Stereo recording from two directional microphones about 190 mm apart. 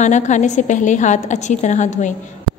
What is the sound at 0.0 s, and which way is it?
A woman's voice, 40° left (ahead or behind).